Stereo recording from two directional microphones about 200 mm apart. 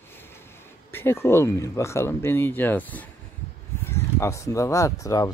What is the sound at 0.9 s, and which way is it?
Speech, 10° left (ahead or behind).